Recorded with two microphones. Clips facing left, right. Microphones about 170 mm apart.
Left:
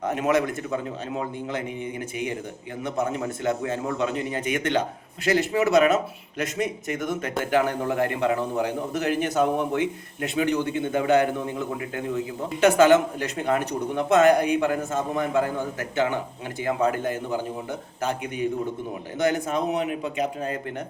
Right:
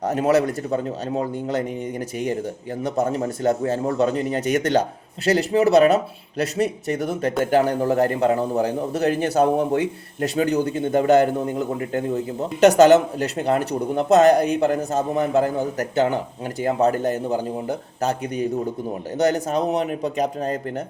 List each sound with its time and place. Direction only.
0.0 s a man's voice: 35° right (ahead or behind)